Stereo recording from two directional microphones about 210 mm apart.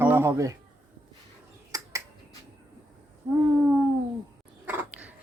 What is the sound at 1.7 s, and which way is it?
Finger snapping, 15° right (ahead or behind).